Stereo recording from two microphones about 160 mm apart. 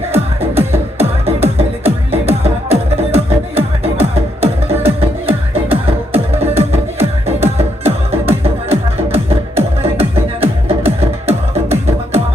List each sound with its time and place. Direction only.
0.3 s music: 40° right (ahead or behind)